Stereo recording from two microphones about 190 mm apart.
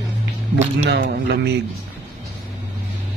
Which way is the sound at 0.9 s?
60° right (ahead or behind).